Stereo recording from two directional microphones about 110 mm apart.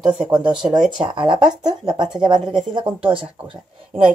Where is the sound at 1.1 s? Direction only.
45° right (ahead or behind).